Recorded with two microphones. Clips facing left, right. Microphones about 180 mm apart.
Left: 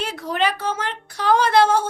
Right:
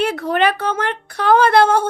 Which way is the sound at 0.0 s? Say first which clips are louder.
Right 6 dB; 60° right (ahead or behind).